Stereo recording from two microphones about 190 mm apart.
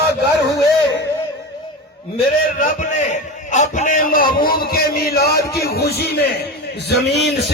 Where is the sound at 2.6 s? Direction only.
40° left (ahead or behind).